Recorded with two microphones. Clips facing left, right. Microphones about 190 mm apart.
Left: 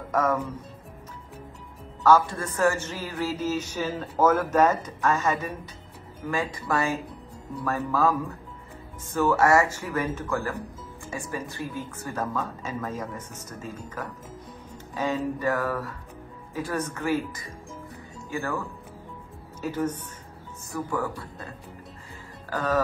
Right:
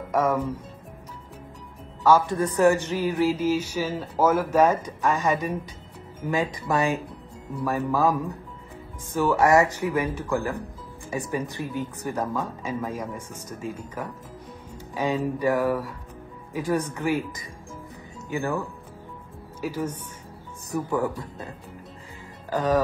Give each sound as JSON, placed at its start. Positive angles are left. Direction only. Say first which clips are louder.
{"t": 0.1, "sound": "speech", "louder": "right 2 dB", "side_deg": -10}
{"t": 2.0, "sound": "speech", "louder": "right 1 dB", "side_deg": -15}
{"t": 19.6, "sound": "speech", "louder": "left 1 dB", "side_deg": -10}
{"t": 22.5, "sound": "speech", "louder": "right 4 dB", "side_deg": -15}